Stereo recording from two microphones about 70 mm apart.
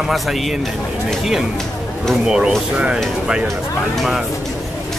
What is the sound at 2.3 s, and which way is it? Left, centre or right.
Speech, centre.